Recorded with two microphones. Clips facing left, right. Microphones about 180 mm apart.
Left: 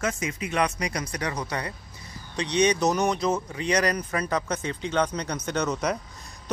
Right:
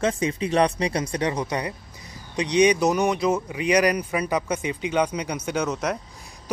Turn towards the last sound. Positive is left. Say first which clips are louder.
# right 1 dB
turn(degrees=-5)  # may be behind; listen again after turning